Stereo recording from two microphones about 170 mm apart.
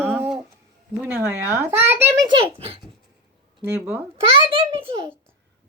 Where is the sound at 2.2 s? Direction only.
30° right (ahead or behind).